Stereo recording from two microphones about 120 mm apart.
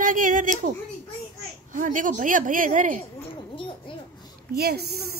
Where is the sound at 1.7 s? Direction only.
90° right.